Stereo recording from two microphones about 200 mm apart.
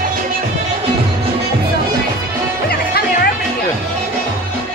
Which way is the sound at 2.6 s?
50° left (ahead or behind).